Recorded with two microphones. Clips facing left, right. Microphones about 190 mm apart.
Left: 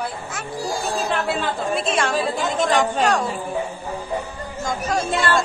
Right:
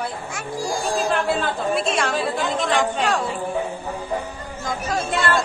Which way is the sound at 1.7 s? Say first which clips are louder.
Left 1 dB; centre (ahead or behind).